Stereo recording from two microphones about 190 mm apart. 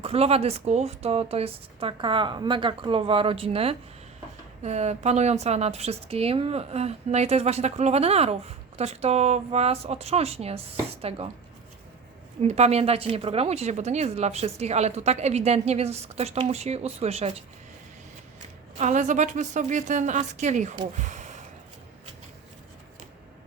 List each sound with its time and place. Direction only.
0.0 s a woman's voice: 30° right (ahead or behind)
12.4 s a woman's voice: 35° right (ahead or behind)
18.8 s a woman's voice: 40° right (ahead or behind)